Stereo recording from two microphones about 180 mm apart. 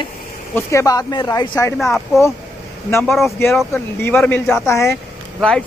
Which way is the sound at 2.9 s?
5° left (ahead or behind).